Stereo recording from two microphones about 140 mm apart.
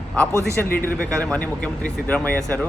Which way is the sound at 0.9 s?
10° left (ahead or behind).